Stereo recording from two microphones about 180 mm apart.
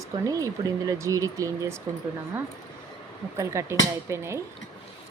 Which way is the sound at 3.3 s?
15° right (ahead or behind).